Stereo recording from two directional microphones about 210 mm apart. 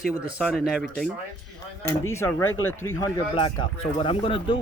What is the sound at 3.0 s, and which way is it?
Speech, 25° left (ahead or behind).